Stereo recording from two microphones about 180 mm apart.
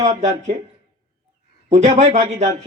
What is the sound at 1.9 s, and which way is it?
Speech, 40° right (ahead or behind).